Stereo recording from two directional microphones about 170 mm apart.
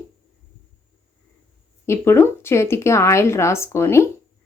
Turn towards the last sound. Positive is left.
turn(degrees=15)  # may be behind; listen again after turning